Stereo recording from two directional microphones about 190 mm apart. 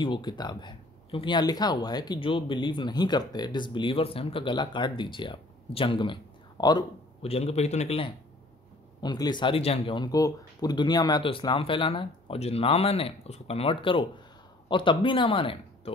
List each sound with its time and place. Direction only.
0.0 s speech: 25° left (ahead or behind)
9.0 s speech: 20° left (ahead or behind)